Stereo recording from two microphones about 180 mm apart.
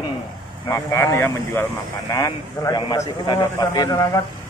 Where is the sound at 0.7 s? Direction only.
15° left (ahead or behind).